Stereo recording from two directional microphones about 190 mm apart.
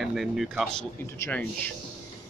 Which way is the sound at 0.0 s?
Centre (ahead or behind).